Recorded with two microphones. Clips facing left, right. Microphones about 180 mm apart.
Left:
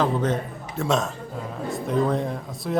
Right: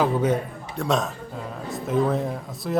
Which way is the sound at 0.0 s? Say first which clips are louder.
Right 2 dB; 10° right (ahead or behind).